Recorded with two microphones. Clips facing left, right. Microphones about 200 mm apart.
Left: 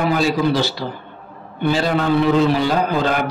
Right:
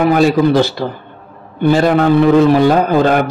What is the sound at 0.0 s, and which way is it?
A man's voice, 55° right (ahead or behind).